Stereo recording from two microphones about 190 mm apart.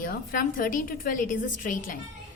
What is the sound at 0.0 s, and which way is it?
A woman's voice, 50° left (ahead or behind).